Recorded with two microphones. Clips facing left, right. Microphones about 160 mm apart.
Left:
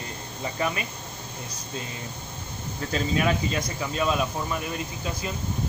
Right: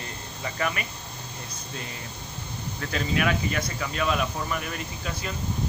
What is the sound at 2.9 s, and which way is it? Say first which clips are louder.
Speech: left 1 dB; 25° left (ahead or behind).